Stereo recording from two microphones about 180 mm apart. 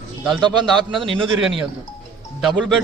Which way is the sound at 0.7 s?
Centre (ahead or behind).